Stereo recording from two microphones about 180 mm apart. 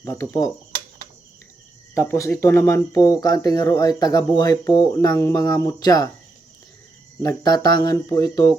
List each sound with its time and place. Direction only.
0.0 s speech: 15° left (ahead or behind)
2.0 s speech: 15° left (ahead or behind)
7.2 s speech: 20° left (ahead or behind)